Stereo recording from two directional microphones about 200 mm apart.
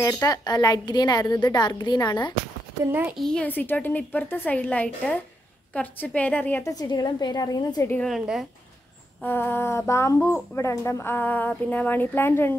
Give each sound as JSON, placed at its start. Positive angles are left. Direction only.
{"t": 0.0, "sound": "a woman's voice", "side_deg": 15}
{"t": 2.8, "sound": "speech", "side_deg": -10}
{"t": 7.9, "sound": "a woman's voice", "side_deg": 0}
{"t": 9.2, "sound": "speech", "side_deg": 10}